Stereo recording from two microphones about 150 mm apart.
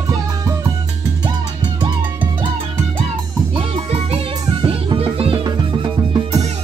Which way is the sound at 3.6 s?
40° right (ahead or behind).